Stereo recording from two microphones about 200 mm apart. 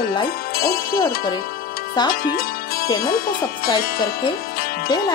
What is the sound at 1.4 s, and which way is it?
Music, 50° left (ahead or behind).